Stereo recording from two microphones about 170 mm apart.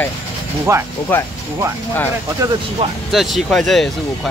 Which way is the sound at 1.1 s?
10° left (ahead or behind).